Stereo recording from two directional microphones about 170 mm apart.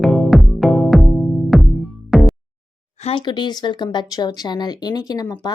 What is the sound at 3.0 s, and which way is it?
Speech, 30° left (ahead or behind).